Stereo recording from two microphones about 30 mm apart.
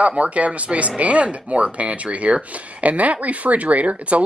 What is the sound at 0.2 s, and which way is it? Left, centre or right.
Speech, right.